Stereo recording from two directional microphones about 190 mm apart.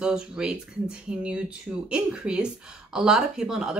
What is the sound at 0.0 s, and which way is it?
Speech, 5° right (ahead or behind).